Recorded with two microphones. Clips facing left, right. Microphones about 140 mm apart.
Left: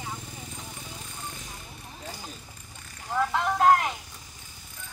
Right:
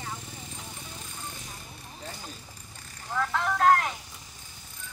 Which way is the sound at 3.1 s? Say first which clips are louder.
Left 2 dB; 15° left (ahead or behind).